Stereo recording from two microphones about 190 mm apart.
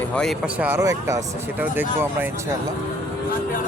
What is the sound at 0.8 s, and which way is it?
Speech, 15° right (ahead or behind).